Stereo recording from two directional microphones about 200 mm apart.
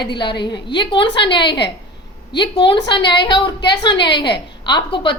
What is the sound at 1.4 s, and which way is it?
Speech, 55° left (ahead or behind).